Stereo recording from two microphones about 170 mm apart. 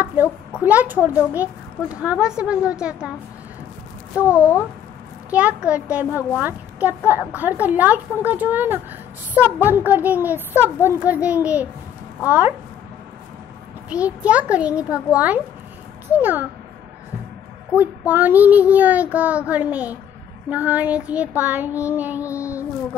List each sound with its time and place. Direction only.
0.7 s child singing: 10° right (ahead or behind)
2.8 s a woman's voice: 5° right (ahead or behind)
4.2 s child singing: 10° right (ahead or behind)
13.8 s child singing: 10° right (ahead or behind)
17.7 s child singing: 10° right (ahead or behind)
22.2 s child singing: 15° left (ahead or behind)